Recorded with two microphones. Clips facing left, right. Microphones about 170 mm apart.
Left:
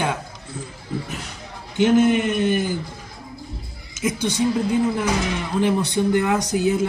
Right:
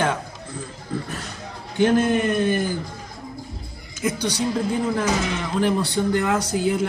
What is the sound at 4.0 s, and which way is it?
Speech, 20° left (ahead or behind).